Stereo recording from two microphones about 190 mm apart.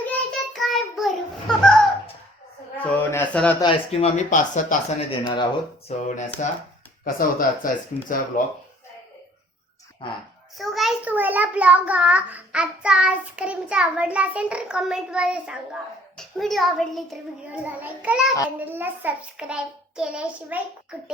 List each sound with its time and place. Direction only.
0.0 s child singing: 5° left (ahead or behind)
2.8 s a sound: 10° left (ahead or behind)
3.6 s speech: 30° left (ahead or behind)
5.2 s speech: 25° left (ahead or behind)
5.9 s speech: 40° left (ahead or behind)
10.6 s a child's voice: centre (ahead or behind)